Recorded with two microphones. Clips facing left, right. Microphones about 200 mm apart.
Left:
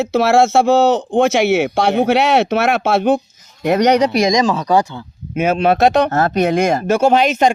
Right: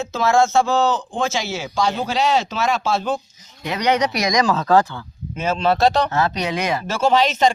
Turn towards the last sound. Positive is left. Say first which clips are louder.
# left 4 dB
turn(degrees=55)  # may be behind; listen again after turning